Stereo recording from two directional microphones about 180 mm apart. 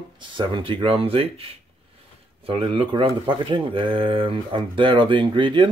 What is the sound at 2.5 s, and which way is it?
Speech, 30° right (ahead or behind).